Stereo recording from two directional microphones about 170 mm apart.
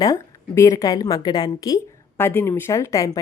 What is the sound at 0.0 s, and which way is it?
A woman's voice, 20° left (ahead or behind).